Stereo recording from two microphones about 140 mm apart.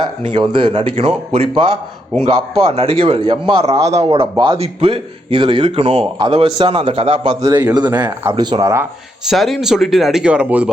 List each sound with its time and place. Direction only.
0.3 s a man's voice: 35° right (ahead or behind)
7.4 s a man's voice: 30° right (ahead or behind)
9.3 s speech: centre (ahead or behind)